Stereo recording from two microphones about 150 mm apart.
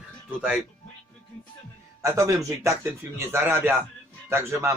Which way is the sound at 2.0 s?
20° right (ahead or behind).